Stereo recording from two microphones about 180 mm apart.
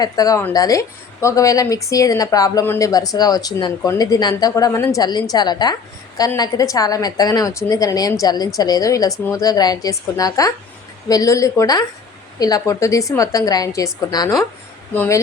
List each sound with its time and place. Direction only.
0.0 s speech: 20° left (ahead or behind)